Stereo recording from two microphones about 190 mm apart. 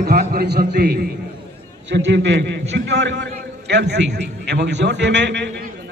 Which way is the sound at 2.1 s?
70° right (ahead or behind).